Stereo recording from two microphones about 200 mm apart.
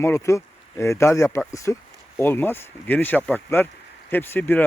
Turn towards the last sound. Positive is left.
turn(degrees=10)  # may be behind; listen again after turning